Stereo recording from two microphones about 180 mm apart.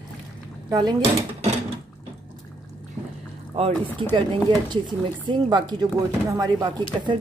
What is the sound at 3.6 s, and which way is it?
Speech, 35° right (ahead or behind).